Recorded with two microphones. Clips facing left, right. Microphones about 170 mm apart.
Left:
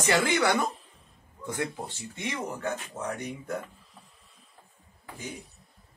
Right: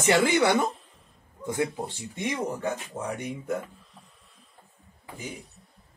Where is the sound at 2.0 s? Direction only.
15° right (ahead or behind).